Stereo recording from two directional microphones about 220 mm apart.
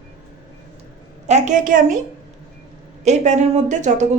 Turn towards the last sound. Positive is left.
turn(degrees=-35)  # may be behind; listen again after turning